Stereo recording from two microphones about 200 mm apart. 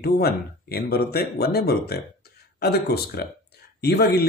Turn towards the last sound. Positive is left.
turn(degrees=55)  # may be behind; listen again after turning